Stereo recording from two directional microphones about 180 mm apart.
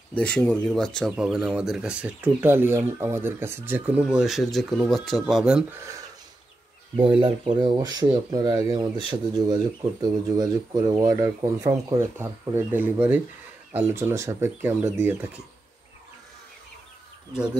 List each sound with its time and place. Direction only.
0.1 s speech: 5° left (ahead or behind)
7.0 s speech: 30° right (ahead or behind); by 15.4 s 10° right (ahead or behind)